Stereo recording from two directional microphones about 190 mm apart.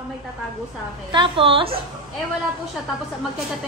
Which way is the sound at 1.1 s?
25° right (ahead or behind).